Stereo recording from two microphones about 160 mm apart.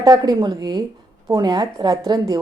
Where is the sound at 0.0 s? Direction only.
25° right (ahead or behind).